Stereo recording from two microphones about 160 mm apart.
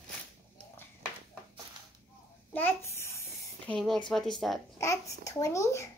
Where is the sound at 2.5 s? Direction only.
10° left (ahead or behind).